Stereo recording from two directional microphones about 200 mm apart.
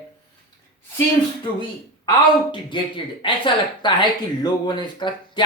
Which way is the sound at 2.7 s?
25° left (ahead or behind).